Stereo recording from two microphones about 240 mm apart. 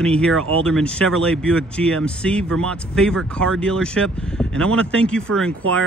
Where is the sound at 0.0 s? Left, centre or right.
Centre.